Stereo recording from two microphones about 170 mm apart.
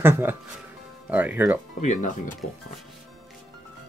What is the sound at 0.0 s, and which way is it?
Speech, 15° right (ahead or behind).